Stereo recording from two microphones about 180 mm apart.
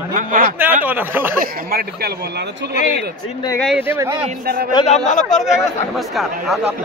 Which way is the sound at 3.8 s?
15° right (ahead or behind).